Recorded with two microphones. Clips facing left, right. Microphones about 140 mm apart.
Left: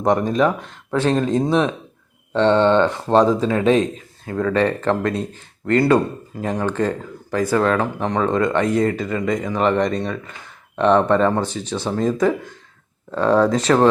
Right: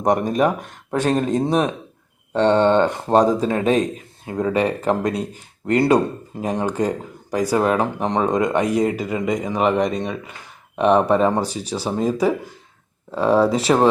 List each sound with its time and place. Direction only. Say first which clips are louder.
0.0 s speech: left 1 dB; 15° right (ahead or behind)
0.3 s speech: left 1 dB; 45° right (ahead or behind)
0.9 s speech: left 1 dB; 15° right (ahead or behind)
1.3 s speech: left 1 dB; 40° right (ahead or behind)
4.3 s speech: left 1 dB; 15° right (ahead or behind)